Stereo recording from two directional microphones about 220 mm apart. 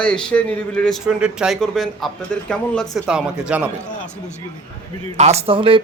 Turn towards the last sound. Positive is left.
turn(degrees=-25)  # may be behind; listen again after turning